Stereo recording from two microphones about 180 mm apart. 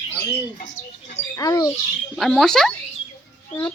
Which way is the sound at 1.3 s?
20° left (ahead or behind).